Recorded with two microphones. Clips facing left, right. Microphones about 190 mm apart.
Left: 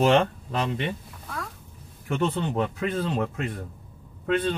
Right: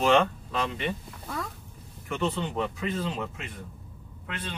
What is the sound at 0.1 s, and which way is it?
Speech, 35° left (ahead or behind).